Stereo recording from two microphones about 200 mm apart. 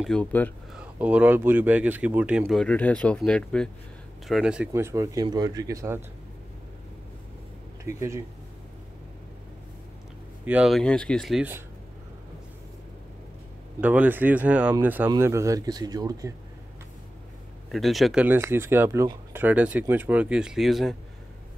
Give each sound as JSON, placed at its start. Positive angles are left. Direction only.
{"t": 0.0, "sound": "speech", "side_deg": 5}
{"t": 0.7, "sound": "speech", "side_deg": -5}
{"t": 7.8, "sound": "speech", "side_deg": -15}
{"t": 10.4, "sound": "speech", "side_deg": -5}
{"t": 13.7, "sound": "speech", "side_deg": -10}
{"t": 17.6, "sound": "speech", "side_deg": 0}